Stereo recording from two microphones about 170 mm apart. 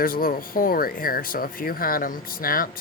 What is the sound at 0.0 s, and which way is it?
Speech, 60° left (ahead or behind).